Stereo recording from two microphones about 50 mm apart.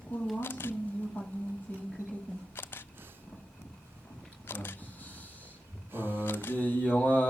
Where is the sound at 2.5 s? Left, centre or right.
Left.